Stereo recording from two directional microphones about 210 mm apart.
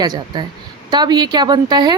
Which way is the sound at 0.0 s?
20° right (ahead or behind).